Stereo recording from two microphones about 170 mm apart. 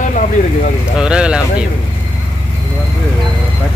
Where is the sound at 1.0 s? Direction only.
5° right (ahead or behind).